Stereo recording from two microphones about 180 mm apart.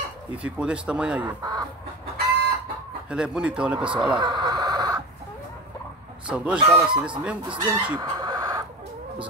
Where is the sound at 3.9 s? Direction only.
25° right (ahead or behind).